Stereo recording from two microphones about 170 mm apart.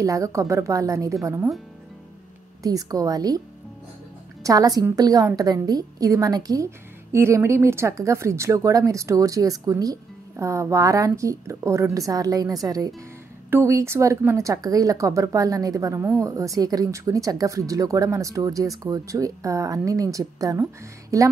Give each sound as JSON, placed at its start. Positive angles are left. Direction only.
{"t": 0.0, "sound": "a woman's voice", "side_deg": -20}
{"t": 2.6, "sound": "a woman's voice", "side_deg": -20}